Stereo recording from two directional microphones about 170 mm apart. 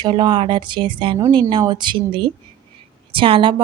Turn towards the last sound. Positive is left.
turn(degrees=-30)  # may be behind; listen again after turning